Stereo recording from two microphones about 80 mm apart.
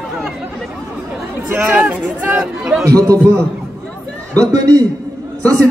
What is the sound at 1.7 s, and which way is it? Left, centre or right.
Speech, centre.